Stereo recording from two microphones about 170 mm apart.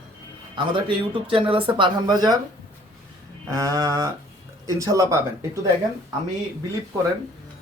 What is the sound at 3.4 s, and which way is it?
Speech, 20° right (ahead or behind).